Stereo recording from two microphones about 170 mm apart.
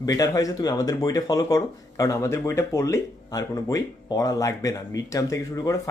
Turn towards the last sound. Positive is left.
turn(degrees=20)  # may be behind; listen again after turning